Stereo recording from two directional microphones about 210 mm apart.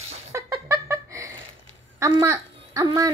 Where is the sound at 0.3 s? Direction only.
15° right (ahead or behind).